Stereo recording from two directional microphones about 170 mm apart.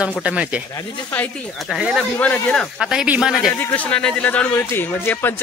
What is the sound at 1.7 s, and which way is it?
Speech, 5° right (ahead or behind).